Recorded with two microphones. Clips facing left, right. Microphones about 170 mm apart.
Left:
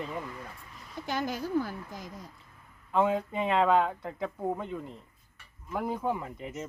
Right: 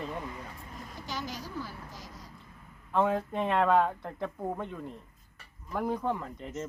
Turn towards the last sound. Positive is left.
turn(degrees=5)  # may be behind; listen again after turning